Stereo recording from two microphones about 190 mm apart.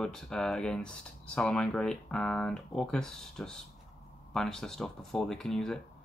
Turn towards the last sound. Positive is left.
turn(degrees=0)  # may be behind; listen again after turning